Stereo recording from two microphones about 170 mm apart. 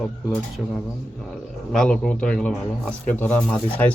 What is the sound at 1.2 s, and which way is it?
Speech, centre (ahead or behind).